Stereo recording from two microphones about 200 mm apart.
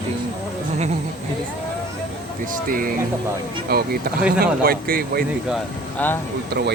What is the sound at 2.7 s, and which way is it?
Speech, 45° right (ahead or behind).